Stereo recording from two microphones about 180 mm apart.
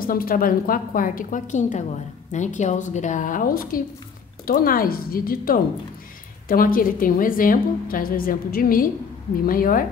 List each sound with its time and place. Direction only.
0.0 s a woman's voice: 55° left (ahead or behind)